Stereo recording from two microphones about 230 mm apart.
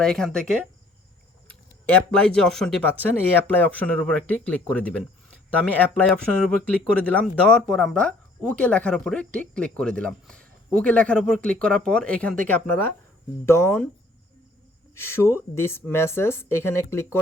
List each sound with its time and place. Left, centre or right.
0.0 s speech: centre
14.9 s speech: centre